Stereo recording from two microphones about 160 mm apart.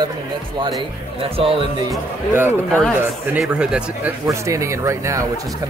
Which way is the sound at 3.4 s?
5° right (ahead or behind).